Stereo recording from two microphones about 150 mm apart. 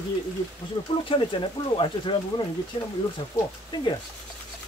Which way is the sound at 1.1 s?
35° left (ahead or behind).